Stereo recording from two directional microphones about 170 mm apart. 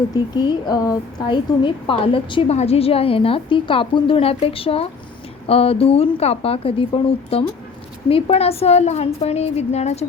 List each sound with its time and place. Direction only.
0.1 s a woman's voice: 25° left (ahead or behind); by 10.1 s 40° left (ahead or behind)